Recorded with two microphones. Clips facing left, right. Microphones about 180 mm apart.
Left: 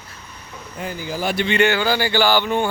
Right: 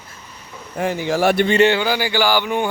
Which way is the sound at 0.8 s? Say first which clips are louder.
Right 8 dB; 75° right (ahead or behind).